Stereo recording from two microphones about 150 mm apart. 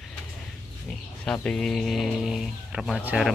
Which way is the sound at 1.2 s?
10° left (ahead or behind).